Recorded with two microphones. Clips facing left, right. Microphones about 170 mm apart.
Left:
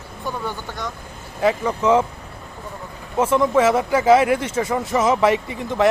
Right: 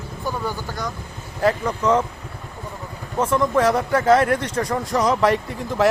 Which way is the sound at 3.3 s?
5° left (ahead or behind).